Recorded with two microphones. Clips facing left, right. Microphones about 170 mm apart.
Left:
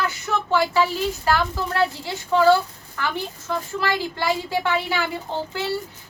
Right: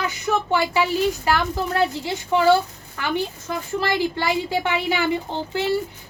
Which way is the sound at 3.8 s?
15° right (ahead or behind).